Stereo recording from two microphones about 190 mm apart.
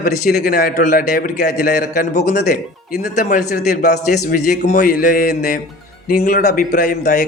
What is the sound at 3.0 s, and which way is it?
Speech, 55° left (ahead or behind).